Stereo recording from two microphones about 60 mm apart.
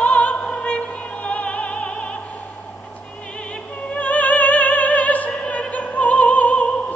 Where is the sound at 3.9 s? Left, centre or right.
Left.